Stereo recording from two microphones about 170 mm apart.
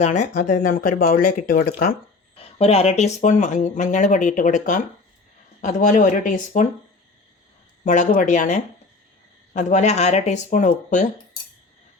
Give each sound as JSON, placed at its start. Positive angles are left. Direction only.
{"t": 0.0, "sound": "speech", "side_deg": 45}
{"t": 2.6, "sound": "speech", "side_deg": 35}
{"t": 7.9, "sound": "speech", "side_deg": 45}